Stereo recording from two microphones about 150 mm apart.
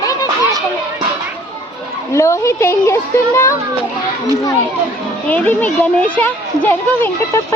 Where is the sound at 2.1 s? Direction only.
20° left (ahead or behind).